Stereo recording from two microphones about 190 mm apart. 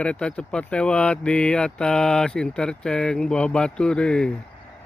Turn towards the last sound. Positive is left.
turn(degrees=5)  # may be behind; listen again after turning